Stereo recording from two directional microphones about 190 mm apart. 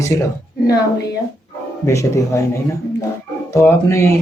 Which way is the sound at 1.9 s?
15° left (ahead or behind).